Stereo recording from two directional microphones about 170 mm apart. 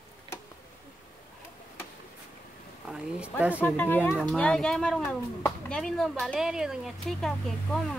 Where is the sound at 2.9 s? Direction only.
5° right (ahead or behind).